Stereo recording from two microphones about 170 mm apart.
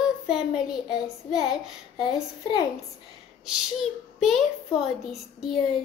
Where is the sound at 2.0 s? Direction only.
25° left (ahead or behind).